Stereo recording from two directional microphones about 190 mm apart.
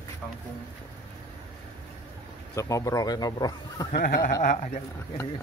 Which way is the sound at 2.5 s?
15° left (ahead or behind).